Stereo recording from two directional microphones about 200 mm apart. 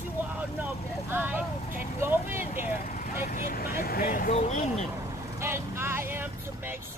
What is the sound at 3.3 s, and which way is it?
Speech, 50° left (ahead or behind).